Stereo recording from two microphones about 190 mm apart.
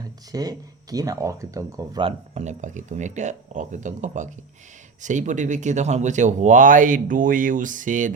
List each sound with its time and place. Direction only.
0.0 s speech: 20° right (ahead or behind); by 8.1 s 45° right (ahead or behind)